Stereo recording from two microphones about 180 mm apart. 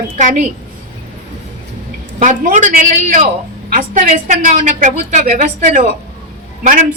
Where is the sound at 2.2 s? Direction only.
45° right (ahead or behind).